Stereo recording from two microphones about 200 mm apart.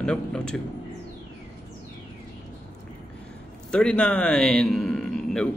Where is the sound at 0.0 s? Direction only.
5° left (ahead or behind).